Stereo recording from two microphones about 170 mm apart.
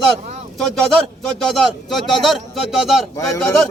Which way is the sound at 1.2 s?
Centre (ahead or behind).